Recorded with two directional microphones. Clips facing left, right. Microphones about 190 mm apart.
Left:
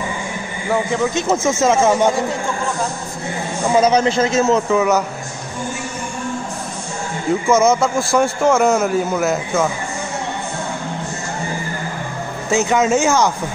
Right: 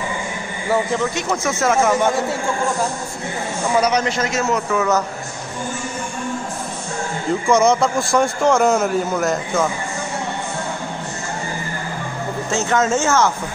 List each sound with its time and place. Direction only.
1.1 s a man's voice: 25° left (ahead or behind)
3.7 s a man's voice: 25° left (ahead or behind)
7.4 s a man's voice: 5° left (ahead or behind)
12.4 s speech: 10° left (ahead or behind)